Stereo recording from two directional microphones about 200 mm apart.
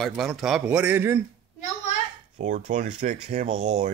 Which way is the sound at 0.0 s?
Centre (ahead or behind).